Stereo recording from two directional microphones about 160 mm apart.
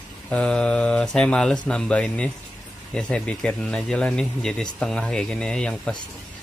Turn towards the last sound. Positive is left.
turn(degrees=5)  # may be behind; listen again after turning